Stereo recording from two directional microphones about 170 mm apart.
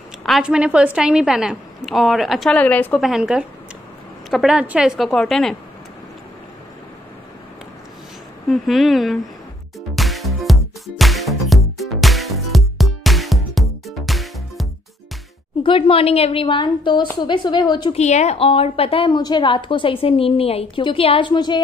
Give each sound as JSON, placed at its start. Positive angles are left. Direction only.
{"t": 0.2, "sound": "a woman's voice", "side_deg": -5}
{"t": 8.5, "sound": "a woman's voice", "side_deg": 0}
{"t": 9.9, "sound": "music", "side_deg": 0}
{"t": 15.6, "sound": "a woman's voice", "side_deg": 30}
{"t": 17.9, "sound": "a woman's voice", "side_deg": 40}